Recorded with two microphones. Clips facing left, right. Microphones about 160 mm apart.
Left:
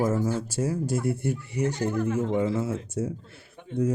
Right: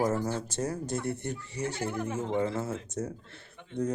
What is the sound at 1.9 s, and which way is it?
Speech, 15° right (ahead or behind).